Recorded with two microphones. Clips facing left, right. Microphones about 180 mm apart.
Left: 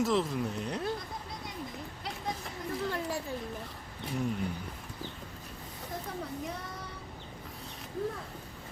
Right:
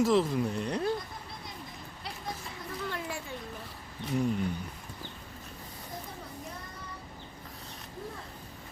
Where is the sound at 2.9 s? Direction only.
40° left (ahead or behind).